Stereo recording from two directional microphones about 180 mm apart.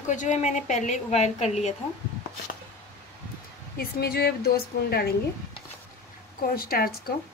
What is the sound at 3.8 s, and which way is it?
Speech, 60° left (ahead or behind).